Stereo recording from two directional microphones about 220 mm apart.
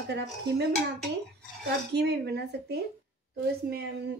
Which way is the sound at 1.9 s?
50° right (ahead or behind).